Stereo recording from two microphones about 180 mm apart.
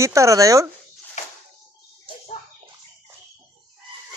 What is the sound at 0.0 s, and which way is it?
Speech, 15° right (ahead or behind).